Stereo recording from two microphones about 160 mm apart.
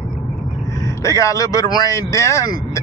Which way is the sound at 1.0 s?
20° left (ahead or behind).